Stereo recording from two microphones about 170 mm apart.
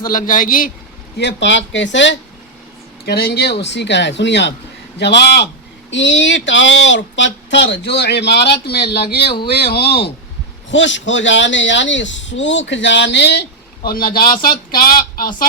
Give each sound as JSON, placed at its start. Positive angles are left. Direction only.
{"t": 0.0, "sound": "a man's voice", "side_deg": 55}
{"t": 1.2, "sound": "speech", "side_deg": 90}
{"t": 3.1, "sound": "speech", "side_deg": 70}
{"t": 4.9, "sound": "speech", "side_deg": 80}
{"t": 5.9, "sound": "speech", "side_deg": 90}
{"t": 10.7, "sound": "speech", "side_deg": 90}
{"t": 13.8, "sound": "a woman's voice", "side_deg": 60}